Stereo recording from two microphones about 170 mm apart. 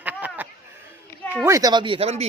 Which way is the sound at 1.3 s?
10° right (ahead or behind).